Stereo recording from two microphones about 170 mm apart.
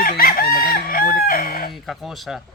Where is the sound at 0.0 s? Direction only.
60° left (ahead or behind).